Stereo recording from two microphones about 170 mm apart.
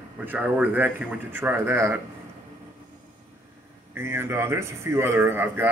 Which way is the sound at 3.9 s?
15° right (ahead or behind).